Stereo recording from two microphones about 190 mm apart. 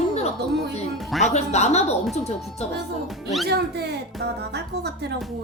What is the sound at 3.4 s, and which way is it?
Speech, 60° right (ahead or behind).